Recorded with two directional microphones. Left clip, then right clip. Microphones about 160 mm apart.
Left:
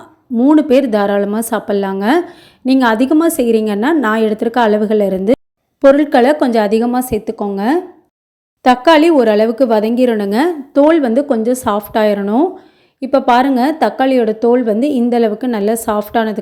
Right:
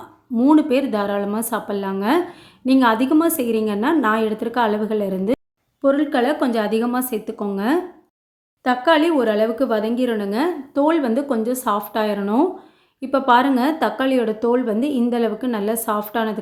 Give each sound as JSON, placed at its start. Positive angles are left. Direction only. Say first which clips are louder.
{"t": 0.5, "sound": "speech", "louder": "left 7 dB", "side_deg": 35}
{"t": 8.6, "sound": "a woman's voice", "louder": "left 8 dB", "side_deg": 45}